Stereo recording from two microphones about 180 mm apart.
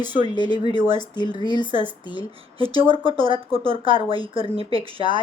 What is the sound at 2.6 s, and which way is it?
A woman's voice, 30° right (ahead or behind).